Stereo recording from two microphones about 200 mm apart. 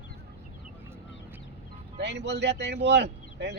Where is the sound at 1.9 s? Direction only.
60° right (ahead or behind).